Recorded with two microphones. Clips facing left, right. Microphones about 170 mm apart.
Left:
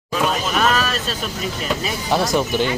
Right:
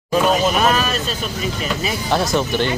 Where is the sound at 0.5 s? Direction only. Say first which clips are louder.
Right 2 dB; 5° right (ahead or behind).